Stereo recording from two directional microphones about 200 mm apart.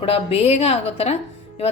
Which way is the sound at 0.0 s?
30° left (ahead or behind).